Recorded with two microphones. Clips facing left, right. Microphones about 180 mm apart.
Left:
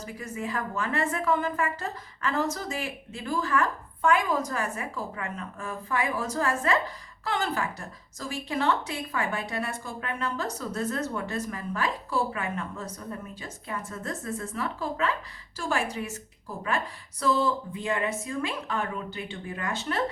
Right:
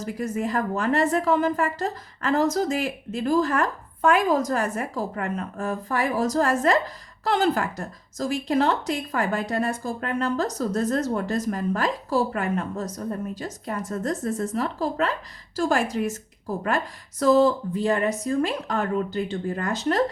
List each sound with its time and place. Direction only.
0.2 s a woman's voice: 40° right (ahead or behind)